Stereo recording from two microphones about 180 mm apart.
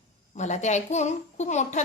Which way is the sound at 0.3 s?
40° left (ahead or behind).